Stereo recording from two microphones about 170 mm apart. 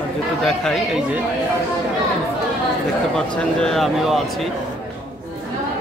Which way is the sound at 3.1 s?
5° left (ahead or behind).